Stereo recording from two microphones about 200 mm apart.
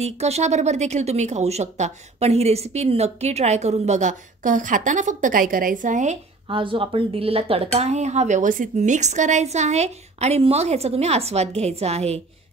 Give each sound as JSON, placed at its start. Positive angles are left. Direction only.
{"t": 0.0, "sound": "speech", "side_deg": -35}